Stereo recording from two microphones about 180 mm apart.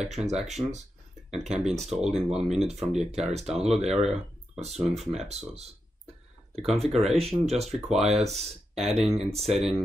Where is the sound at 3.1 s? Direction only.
35° right (ahead or behind).